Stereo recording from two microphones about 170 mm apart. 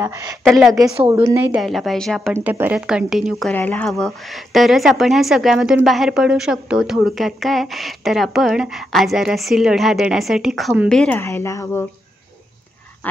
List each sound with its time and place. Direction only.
0.0 s a woman's voice: 20° right (ahead or behind)
0.4 s a woman's voice: centre (ahead or behind)
1.0 s a woman's voice: 15° right (ahead or behind)
1.6 s a woman's voice: centre (ahead or behind)
2.3 s a woman's voice: 15° right (ahead or behind); by 11.1 s 5° left (ahead or behind)
11.1 s a woman's voice: 15° left (ahead or behind)